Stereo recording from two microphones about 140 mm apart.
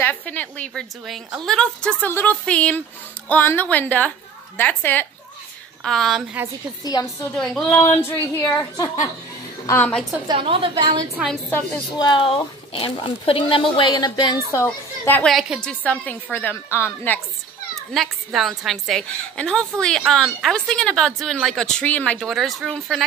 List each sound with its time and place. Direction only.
0.0 s speech: 10° left (ahead or behind)
5.9 s speech: centre (ahead or behind)
6.8 s speech: 30° left (ahead or behind); by 10.0 s 10° left (ahead or behind)
10.2 s a woman's voice: 40° right (ahead or behind)
12.0 s speech: 35° left (ahead or behind)
14.5 s speech: 15° left (ahead or behind)
15.2 s speech: centre (ahead or behind); by 17.2 s 15° left (ahead or behind)
17.9 s speech: centre (ahead or behind)
22.3 s speech: centre (ahead or behind)